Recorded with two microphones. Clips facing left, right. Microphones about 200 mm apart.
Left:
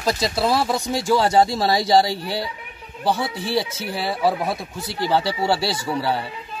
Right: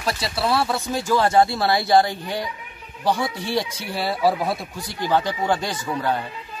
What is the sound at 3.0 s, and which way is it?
Speech, 5° left (ahead or behind).